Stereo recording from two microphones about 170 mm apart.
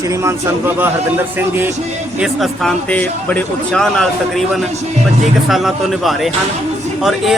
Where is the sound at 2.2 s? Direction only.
Centre (ahead or behind).